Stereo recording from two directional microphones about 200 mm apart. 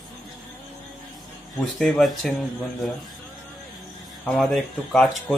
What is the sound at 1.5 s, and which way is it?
Speech, centre (ahead or behind).